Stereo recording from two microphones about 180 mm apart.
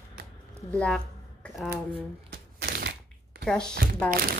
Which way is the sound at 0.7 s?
5° left (ahead or behind).